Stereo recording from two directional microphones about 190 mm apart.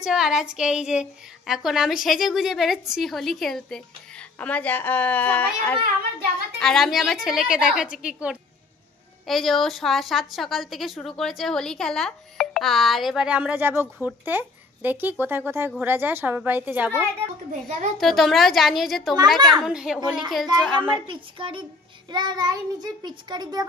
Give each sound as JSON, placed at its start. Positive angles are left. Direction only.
{"t": 0.0, "sound": "a woman's voice", "side_deg": 0}
{"t": 17.5, "sound": "a child's voice", "side_deg": -40}
{"t": 17.9, "sound": "a woman's voice", "side_deg": 0}
{"t": 21.1, "sound": "child singing", "side_deg": -25}